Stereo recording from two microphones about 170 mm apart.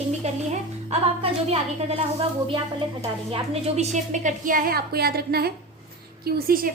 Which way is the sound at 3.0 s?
35° right (ahead or behind).